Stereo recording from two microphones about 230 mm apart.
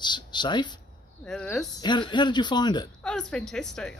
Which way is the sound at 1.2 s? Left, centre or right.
Centre.